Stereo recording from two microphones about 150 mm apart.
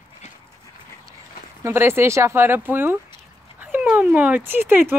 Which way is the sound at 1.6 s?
15° right (ahead or behind).